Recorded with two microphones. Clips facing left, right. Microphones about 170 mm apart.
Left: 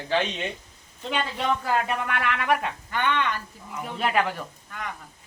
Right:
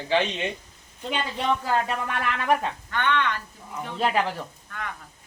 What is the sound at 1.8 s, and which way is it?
Speech, 35° right (ahead or behind).